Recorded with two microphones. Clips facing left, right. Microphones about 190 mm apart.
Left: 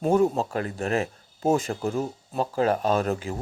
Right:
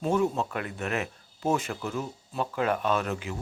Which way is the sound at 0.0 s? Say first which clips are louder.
Left 5 dB; 35° left (ahead or behind).